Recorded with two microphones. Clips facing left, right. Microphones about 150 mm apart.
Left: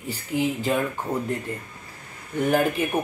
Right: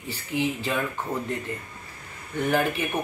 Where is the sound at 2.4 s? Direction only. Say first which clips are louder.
Left 3 dB; 10° left (ahead or behind).